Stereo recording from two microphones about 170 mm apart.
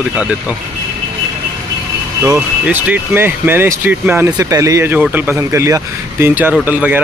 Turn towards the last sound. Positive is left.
turn(degrees=-10)  # may be behind; listen again after turning